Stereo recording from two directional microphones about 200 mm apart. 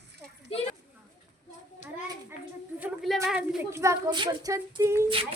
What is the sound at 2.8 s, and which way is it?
Speech, centre (ahead or behind).